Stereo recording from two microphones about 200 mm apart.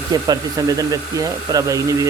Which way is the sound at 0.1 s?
20° right (ahead or behind).